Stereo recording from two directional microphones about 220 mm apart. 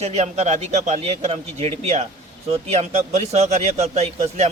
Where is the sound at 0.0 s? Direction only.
30° right (ahead or behind).